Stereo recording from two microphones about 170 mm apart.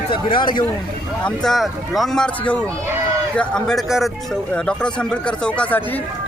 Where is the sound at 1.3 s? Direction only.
Centre (ahead or behind).